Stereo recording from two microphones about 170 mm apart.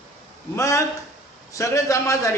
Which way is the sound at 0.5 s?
15° left (ahead or behind).